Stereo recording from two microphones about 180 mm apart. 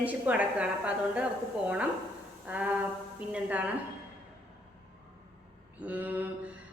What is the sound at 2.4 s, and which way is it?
A woman's voice, 10° right (ahead or behind).